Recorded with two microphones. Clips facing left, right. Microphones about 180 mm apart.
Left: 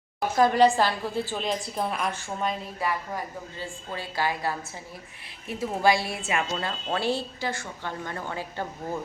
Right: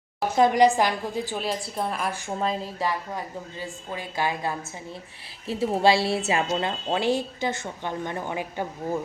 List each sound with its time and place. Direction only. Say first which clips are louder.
0.2 s a woman's voice: right 1 dB; 20° right (ahead or behind); by 2.1 s centre (ahead or behind)
2.4 s speech: right 2 dB; 30° right (ahead or behind)
3.6 s a woman's voice: even; 15° right (ahead or behind)